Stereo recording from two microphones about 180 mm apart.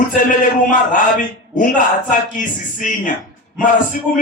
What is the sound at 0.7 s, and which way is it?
A man's voice, 45° left (ahead or behind).